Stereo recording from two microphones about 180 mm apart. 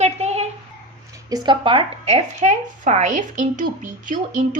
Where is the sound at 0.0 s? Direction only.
35° right (ahead or behind).